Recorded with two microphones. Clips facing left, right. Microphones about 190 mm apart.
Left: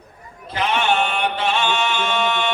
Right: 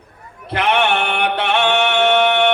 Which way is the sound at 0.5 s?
65° right (ahead or behind).